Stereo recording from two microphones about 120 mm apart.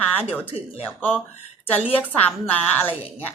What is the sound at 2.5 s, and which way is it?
Speech, 15° left (ahead or behind).